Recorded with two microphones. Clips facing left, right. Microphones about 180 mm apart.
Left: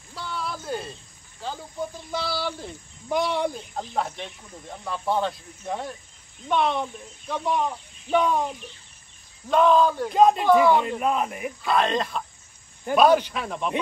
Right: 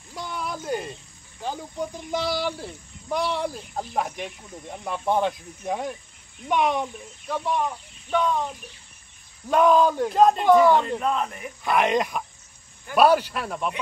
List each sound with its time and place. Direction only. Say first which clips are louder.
0.1 s a sound: right 1 dB; 15° right (ahead or behind)
2.0 s speech: right 4 dB; 15° right (ahead or behind)
2.6 s speech: right 1 dB; centre (ahead or behind)
7.2 s speech: even; centre (ahead or behind)
9.5 s speech: even; 10° right (ahead or behind); by 11.5 s 15° left (ahead or behind)
11.6 s speech: right 2 dB; 15° right (ahead or behind)